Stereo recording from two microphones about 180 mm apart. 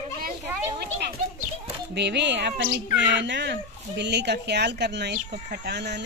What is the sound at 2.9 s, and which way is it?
Speech, 85° right.